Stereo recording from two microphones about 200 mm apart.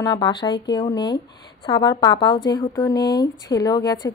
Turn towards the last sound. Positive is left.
turn(degrees=20)  # may be behind; listen again after turning